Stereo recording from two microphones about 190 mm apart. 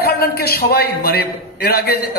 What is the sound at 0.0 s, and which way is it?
A man's voice, 55° left (ahead or behind).